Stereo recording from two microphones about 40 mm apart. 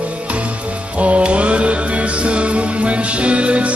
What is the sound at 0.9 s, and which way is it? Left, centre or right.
Mantra, right.